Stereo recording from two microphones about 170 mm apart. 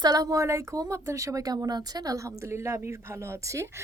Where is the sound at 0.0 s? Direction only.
20° right (ahead or behind).